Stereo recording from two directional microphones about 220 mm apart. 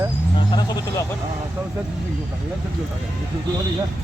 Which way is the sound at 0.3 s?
20° left (ahead or behind).